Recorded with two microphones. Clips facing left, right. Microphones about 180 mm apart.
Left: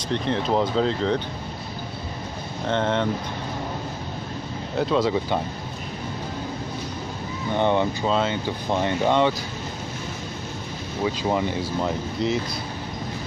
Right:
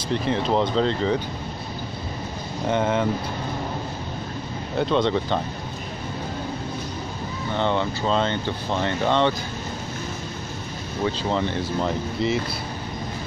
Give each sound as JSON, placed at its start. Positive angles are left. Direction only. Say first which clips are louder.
{"t": 0.1, "sound": "speech", "louder": "right 1 dB", "side_deg": -5}
{"t": 2.7, "sound": "speech", "louder": "right 1 dB", "side_deg": -5}
{"t": 4.7, "sound": "speech", "louder": "even", "side_deg": 5}
{"t": 7.5, "sound": "speech", "louder": "left 3 dB", "side_deg": 15}
{"t": 11.1, "sound": "speech", "louder": "left 1 dB", "side_deg": 10}
{"t": 12.2, "sound": "speech", "louder": "even", "side_deg": 0}